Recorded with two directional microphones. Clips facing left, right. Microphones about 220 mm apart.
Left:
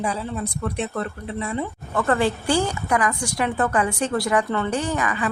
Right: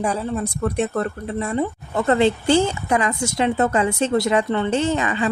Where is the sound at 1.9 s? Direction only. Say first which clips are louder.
Right 4 dB; 25° right (ahead or behind).